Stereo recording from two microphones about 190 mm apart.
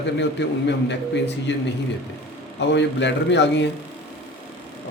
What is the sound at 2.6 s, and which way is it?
Speech, 70° left (ahead or behind).